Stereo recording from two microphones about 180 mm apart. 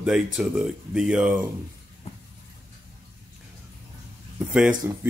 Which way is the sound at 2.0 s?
35° left (ahead or behind).